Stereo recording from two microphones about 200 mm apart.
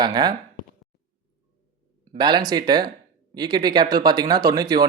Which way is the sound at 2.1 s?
20° right (ahead or behind).